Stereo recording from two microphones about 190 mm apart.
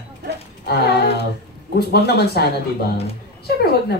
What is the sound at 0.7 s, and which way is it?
Speech, 55° left (ahead or behind).